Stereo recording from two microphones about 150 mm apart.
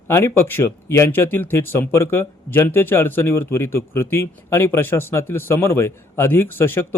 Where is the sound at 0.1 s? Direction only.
15° left (ahead or behind).